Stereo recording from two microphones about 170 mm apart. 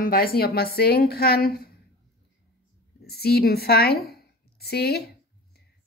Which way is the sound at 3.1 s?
70° left (ahead or behind).